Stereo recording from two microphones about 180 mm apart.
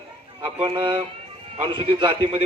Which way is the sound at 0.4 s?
25° right (ahead or behind).